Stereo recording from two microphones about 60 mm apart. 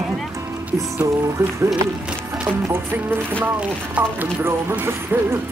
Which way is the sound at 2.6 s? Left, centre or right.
Right.